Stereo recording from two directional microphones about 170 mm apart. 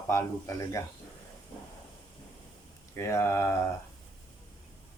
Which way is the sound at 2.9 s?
15° left (ahead or behind).